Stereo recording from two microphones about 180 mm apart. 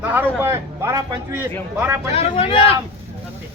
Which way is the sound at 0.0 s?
10° right (ahead or behind).